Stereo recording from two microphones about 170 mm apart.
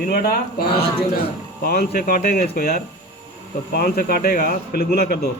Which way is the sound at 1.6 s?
65° left (ahead or behind).